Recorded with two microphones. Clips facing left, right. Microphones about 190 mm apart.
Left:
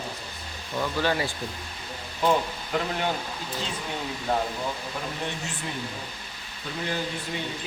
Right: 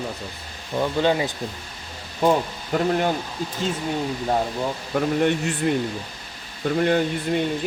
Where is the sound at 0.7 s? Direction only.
20° right (ahead or behind).